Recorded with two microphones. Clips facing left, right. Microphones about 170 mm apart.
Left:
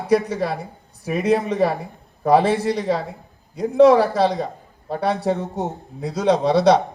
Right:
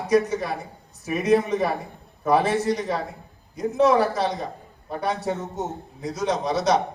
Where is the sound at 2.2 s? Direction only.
30° left (ahead or behind).